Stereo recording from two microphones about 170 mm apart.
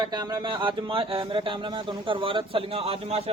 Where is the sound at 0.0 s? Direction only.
25° right (ahead or behind).